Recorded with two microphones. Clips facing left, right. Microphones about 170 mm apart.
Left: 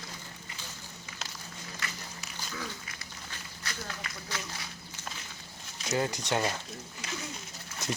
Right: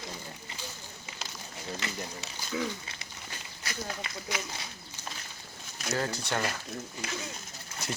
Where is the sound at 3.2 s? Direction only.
15° right (ahead or behind).